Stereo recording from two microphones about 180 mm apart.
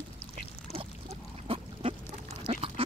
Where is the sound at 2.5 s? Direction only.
30° right (ahead or behind).